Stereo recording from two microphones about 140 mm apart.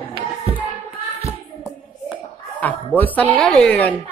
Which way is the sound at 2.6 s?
10° left (ahead or behind).